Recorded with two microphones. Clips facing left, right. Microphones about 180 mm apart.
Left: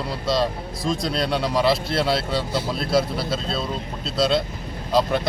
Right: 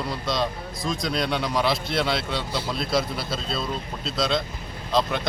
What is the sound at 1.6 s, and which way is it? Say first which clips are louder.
Speech: left 4 dB; centre (ahead or behind).